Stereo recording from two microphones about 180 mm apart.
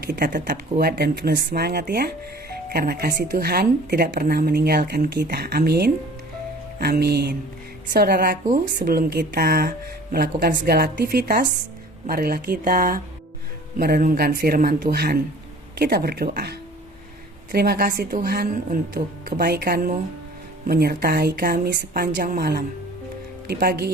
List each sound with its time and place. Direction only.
0.1 s a woman's voice: 50° right (ahead or behind)
7.0 s a woman's voice: 65° right (ahead or behind)